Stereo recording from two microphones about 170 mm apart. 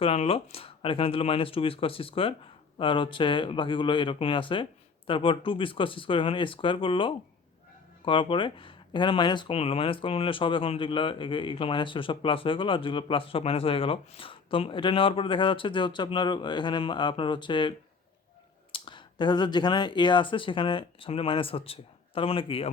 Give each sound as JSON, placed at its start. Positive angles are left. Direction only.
{"t": 0.0, "sound": "speech", "side_deg": 35}